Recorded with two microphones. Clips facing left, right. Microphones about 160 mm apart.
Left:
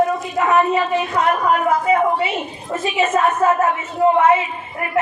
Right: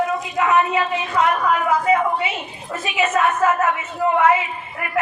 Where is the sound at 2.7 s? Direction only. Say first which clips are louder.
Left 3 dB; 35° left (ahead or behind).